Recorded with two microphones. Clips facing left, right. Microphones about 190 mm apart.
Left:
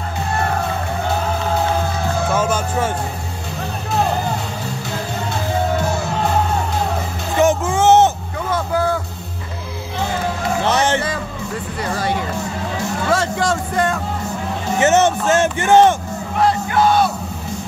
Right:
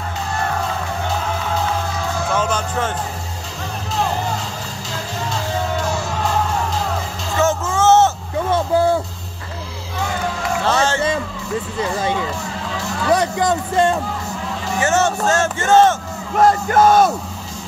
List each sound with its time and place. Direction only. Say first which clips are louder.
2.3 s music: even; 10° left (ahead or behind)
4.9 s music: even; 60° left (ahead or behind)
7.3 s music: left 3 dB; 15° left (ahead or behind)
8.5 s vehicle: right 3 dB; 30° right (ahead or behind)
10.6 s music: left 1 dB; 20° left (ahead or behind)
11.8 s music: even; 20° right (ahead or behind)
14.8 s music: left 3 dB; 20° left (ahead or behind)
16.3 s music: right 3 dB; 45° right (ahead or behind)